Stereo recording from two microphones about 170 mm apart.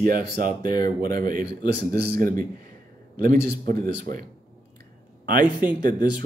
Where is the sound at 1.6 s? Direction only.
75° right (ahead or behind); by 4.2 s 55° right (ahead or behind).